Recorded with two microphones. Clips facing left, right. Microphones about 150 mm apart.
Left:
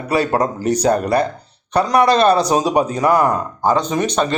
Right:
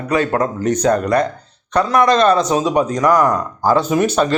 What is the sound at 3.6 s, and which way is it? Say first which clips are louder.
Speech: right 2 dB; 20° left (ahead or behind).